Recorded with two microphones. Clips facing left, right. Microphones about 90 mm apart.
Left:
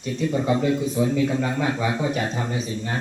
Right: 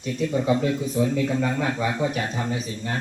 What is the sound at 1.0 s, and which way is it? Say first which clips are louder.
Speech: left 1 dB; 15° left (ahead or behind).